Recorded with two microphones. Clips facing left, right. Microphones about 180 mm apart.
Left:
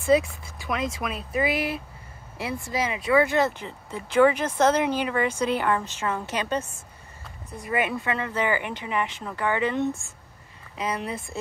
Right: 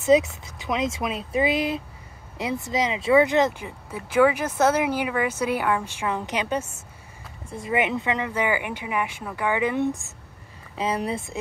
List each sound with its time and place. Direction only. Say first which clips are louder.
0.0 s speech: right 2 dB; 20° right (ahead or behind)
7.5 s speech: right 2 dB; 20° right (ahead or behind)
10.8 s speech: right 4 dB; 30° right (ahead or behind)